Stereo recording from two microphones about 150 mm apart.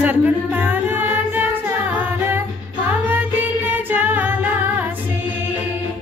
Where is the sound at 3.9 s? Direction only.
10° right (ahead or behind).